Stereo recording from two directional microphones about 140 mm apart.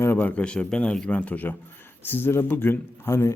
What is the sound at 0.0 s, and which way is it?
A man's voice, 15° left (ahead or behind).